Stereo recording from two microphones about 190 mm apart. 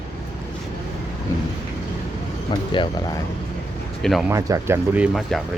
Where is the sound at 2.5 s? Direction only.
25° left (ahead or behind).